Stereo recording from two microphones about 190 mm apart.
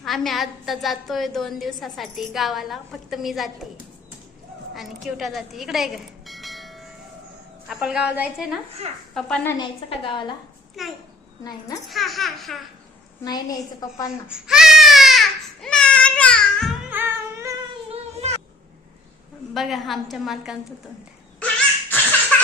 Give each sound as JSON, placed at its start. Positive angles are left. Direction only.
{"t": 0.0, "sound": "a woman's voice", "side_deg": 0}
{"t": 4.7, "sound": "a woman's voice", "side_deg": 0}
{"t": 9.1, "sound": "a woman's voice", "side_deg": 5}
{"t": 9.6, "sound": "a woman's voice", "side_deg": 25}
{"t": 10.8, "sound": "a woman's voice", "side_deg": 0}
{"t": 13.2, "sound": "a woman's voice", "side_deg": 20}
{"t": 14.3, "sound": "baby cry", "side_deg": -5}
{"t": 16.9, "sound": "music", "side_deg": -10}
{"t": 17.9, "sound": "a sound", "side_deg": -35}
{"t": 19.5, "sound": "a woman's voice", "side_deg": 0}
{"t": 21.3, "sound": "dog", "side_deg": 10}